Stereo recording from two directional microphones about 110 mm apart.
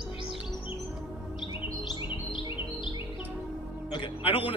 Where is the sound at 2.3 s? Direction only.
50° left (ahead or behind).